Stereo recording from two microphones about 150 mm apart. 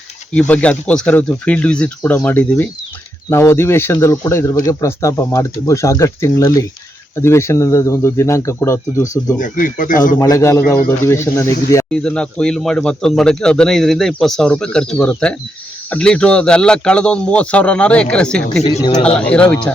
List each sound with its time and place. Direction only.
0.3 s speech: 10° left (ahead or behind)
9.4 s speech: 60° left (ahead or behind)
10.2 s speech: 20° left (ahead or behind)
11.9 s speech: 5° left (ahead or behind)